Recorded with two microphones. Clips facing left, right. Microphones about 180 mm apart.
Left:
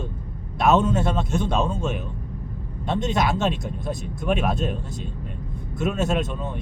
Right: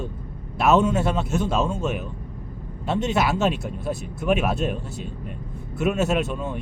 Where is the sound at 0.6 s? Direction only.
10° right (ahead or behind).